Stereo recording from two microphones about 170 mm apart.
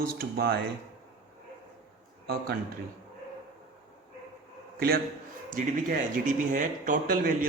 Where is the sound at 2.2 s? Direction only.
65° right (ahead or behind).